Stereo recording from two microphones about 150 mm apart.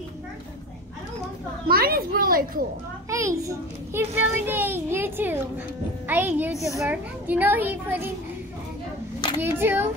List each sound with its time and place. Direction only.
1.7 s a sound: 85° right
3.1 s a child's voice: 20° right (ahead or behind)
9.4 s a child's voice: 15° right (ahead or behind)